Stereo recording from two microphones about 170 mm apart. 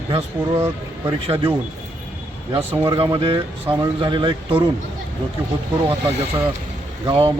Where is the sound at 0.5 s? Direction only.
15° right (ahead or behind).